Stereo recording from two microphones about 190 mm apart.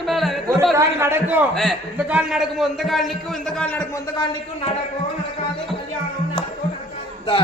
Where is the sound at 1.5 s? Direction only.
Centre (ahead or behind).